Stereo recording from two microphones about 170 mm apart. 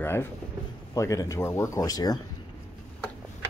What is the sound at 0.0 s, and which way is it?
Speech, 15° left (ahead or behind).